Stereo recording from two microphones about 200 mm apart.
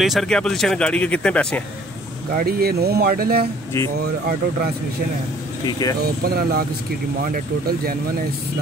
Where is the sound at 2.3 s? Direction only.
50° right (ahead or behind).